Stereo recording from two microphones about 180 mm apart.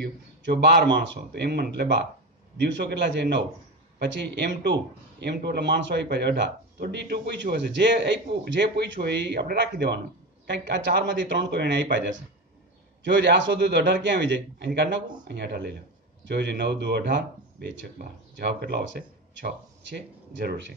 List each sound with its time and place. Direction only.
0.0 s a man's voice: 70° right (ahead or behind)
13.0 s speech: 75° right (ahead or behind)